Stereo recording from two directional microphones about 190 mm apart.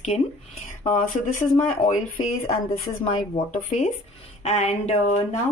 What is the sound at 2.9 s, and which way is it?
Speech, 20° left (ahead or behind).